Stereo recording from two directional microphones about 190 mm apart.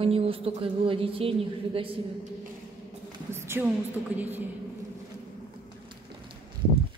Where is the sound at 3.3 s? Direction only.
15° right (ahead or behind).